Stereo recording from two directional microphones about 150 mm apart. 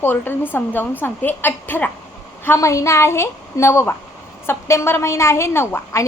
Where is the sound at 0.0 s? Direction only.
15° left (ahead or behind).